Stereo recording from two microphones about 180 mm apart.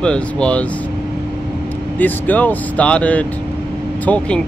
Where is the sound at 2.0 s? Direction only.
10° left (ahead or behind).